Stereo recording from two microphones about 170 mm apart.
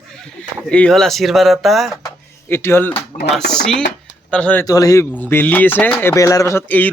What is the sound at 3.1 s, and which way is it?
Speech, 45° left (ahead or behind).